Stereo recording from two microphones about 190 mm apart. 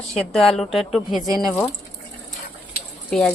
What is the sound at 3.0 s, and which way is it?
Speech, 5° left (ahead or behind).